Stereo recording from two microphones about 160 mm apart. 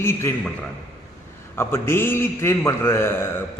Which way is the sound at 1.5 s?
15° left (ahead or behind).